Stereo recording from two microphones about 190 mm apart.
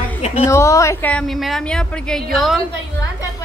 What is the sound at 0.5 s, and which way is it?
A woman's voice, 15° left (ahead or behind).